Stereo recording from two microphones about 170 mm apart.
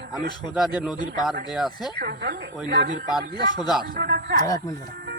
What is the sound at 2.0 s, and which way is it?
Speech, 70° right (ahead or behind).